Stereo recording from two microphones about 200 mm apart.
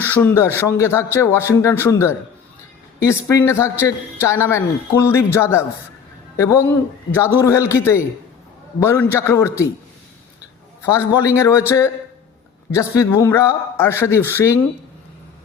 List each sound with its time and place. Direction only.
0.0 s a man's voice: 10° left (ahead or behind)
10.9 s a man's voice: 15° left (ahead or behind)
12.7 s a man's voice: 15° left (ahead or behind)